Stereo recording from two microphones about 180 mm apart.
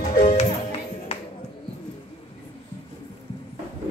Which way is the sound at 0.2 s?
35° left (ahead or behind).